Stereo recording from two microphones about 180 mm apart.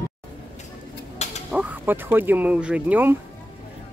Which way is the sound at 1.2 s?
40° left (ahead or behind).